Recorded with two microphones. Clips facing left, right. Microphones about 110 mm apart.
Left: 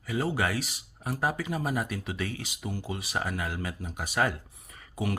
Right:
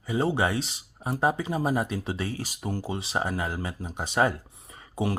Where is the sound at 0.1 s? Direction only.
25° right (ahead or behind).